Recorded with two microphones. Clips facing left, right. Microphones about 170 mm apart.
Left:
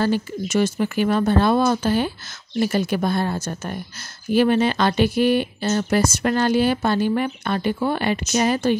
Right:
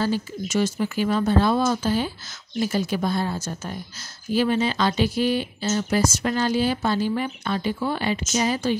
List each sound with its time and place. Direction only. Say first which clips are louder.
0.0 s speech: left 3 dB; 60° left (ahead or behind)